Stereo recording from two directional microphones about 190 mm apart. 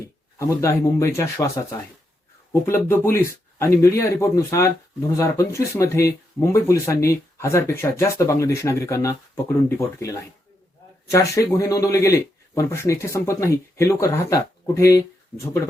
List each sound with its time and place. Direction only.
0.0 s speech: 15° left (ahead or behind)